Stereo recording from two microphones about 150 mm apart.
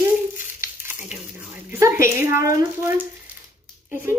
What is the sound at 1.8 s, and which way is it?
A woman's voice, 20° right (ahead or behind).